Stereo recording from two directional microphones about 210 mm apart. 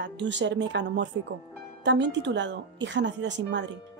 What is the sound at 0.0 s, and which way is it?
A woman's voice, 60° right (ahead or behind).